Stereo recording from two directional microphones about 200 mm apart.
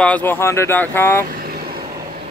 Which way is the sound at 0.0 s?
10° left (ahead or behind).